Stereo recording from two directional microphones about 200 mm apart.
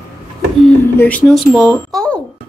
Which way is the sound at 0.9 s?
5° left (ahead or behind).